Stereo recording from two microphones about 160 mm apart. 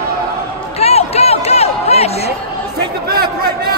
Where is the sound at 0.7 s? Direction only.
40° left (ahead or behind).